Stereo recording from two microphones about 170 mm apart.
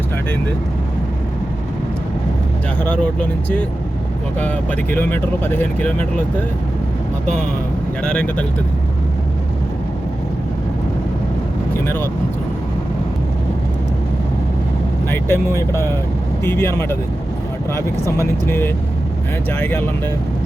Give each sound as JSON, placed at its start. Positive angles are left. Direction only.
{"t": 2.8, "sound": "speech", "side_deg": 5}
{"t": 8.0, "sound": "speech", "side_deg": 5}
{"t": 15.1, "sound": "speech", "side_deg": 15}